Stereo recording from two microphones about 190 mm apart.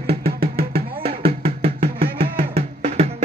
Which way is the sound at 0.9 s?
30° right (ahead or behind).